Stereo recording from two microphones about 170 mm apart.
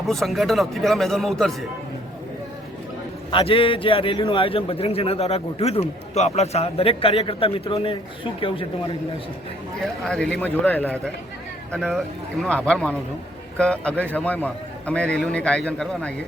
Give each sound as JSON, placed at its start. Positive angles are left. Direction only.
{"t": 0.1, "sound": "speech", "side_deg": 0}
{"t": 3.3, "sound": "a man's voice", "side_deg": 30}
{"t": 9.8, "sound": "a man's voice", "side_deg": 5}